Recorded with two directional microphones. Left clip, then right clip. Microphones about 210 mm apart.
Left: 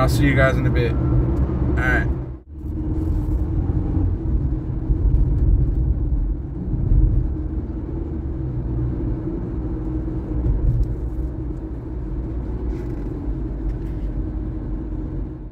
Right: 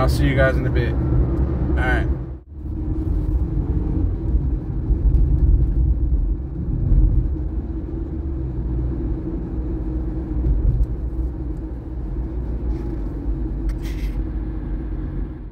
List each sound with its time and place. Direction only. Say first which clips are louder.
0.0 s speech: left 1 dB; 20° left (ahead or behind)